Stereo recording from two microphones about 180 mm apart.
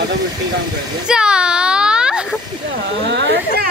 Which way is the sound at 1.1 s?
5° right (ahead or behind).